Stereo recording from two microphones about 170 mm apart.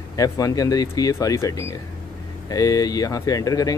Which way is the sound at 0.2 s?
20° left (ahead or behind).